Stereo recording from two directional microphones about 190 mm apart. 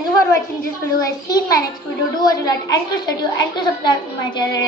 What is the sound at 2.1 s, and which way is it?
A woman's voice, 20° left (ahead or behind).